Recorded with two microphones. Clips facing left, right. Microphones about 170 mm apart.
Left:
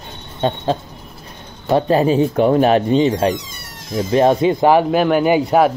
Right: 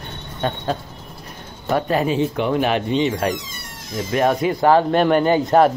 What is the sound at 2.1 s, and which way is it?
Speech, 40° left (ahead or behind).